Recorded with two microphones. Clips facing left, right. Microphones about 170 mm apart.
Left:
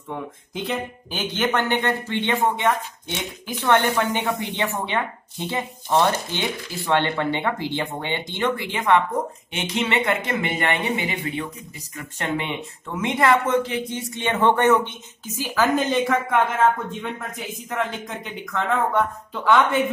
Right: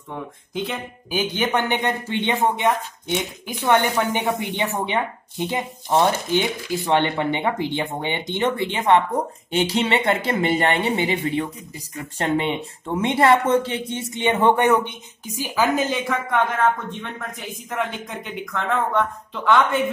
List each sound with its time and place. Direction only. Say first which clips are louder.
0.1 s speech: right 1 dB; centre (ahead or behind)
1.1 s a woman's voice: right 2 dB; 10° right (ahead or behind); by 14.0 s 30° right (ahead or behind)
14.1 s speech: right 2 dB; 15° right (ahead or behind); by 19.9 s centre (ahead or behind)